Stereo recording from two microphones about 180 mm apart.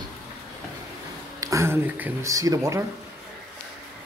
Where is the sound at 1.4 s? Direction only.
15° right (ahead or behind).